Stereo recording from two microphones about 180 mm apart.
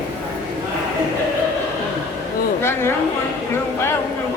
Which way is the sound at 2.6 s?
15° left (ahead or behind).